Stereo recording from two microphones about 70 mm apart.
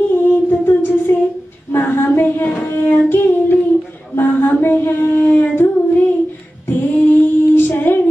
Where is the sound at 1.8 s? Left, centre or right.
Left.